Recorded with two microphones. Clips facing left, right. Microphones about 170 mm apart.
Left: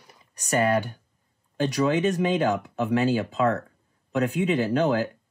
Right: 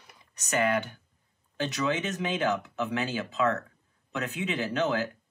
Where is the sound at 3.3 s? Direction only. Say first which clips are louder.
Left 4 dB; 35° left (ahead or behind).